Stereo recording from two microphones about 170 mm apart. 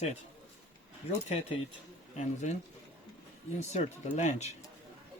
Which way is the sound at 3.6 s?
45° left (ahead or behind).